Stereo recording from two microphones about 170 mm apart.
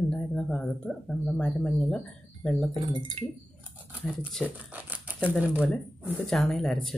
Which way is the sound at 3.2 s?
35° right (ahead or behind).